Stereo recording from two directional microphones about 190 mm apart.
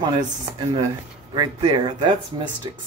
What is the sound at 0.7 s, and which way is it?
Speech, 20° right (ahead or behind).